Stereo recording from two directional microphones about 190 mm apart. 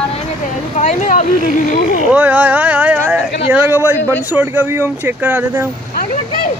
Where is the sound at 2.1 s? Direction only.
5° right (ahead or behind).